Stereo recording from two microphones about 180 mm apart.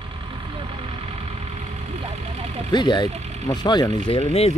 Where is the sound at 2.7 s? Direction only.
25° left (ahead or behind).